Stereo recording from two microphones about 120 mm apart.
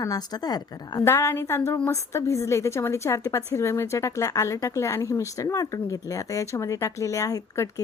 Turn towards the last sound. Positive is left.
turn(degrees=25)  # may be behind; listen again after turning